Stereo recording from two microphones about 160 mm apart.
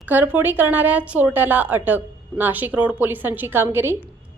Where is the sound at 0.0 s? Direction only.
10° right (ahead or behind).